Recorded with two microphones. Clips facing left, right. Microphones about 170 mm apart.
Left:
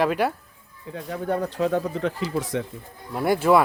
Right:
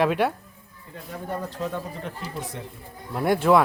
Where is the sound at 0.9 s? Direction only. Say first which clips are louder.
Left 6 dB; 75° left (ahead or behind).